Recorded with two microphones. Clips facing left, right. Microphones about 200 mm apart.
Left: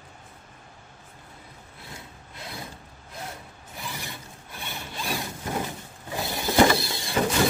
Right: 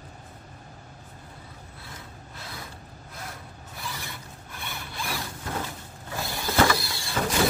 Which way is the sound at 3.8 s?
15° left (ahead or behind).